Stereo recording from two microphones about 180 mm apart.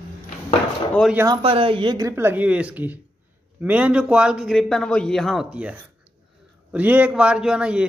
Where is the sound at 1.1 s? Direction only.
20° right (ahead or behind).